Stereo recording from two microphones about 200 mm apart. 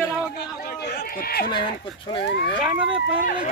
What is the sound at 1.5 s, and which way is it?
Speech, 25° left (ahead or behind).